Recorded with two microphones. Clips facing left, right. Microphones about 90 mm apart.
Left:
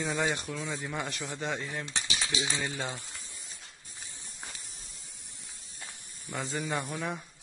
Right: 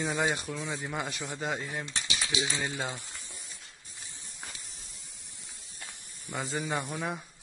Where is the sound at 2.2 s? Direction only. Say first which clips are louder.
Right 2 dB; 20° left (ahead or behind).